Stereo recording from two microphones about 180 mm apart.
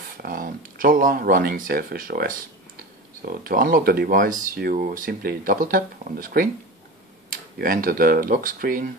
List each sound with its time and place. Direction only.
0.2 s speech: 50° right (ahead or behind)